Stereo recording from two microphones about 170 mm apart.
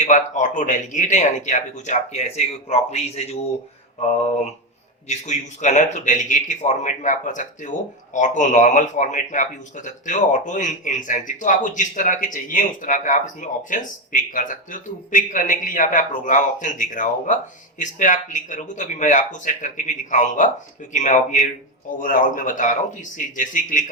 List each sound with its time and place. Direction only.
0.0 s speech: 45° left (ahead or behind)
4.3 s mantra: 40° left (ahead or behind)
5.0 s speech: 45° left (ahead or behind)